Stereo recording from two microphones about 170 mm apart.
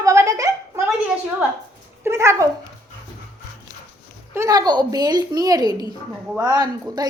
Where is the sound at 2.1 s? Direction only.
15° right (ahead or behind).